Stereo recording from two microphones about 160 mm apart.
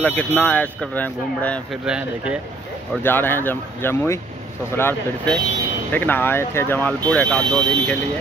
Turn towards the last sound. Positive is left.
turn(degrees=10)  # may be behind; listen again after turning